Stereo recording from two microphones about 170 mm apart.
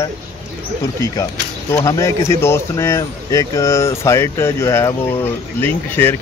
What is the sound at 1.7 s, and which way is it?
Speech, 15° left (ahead or behind).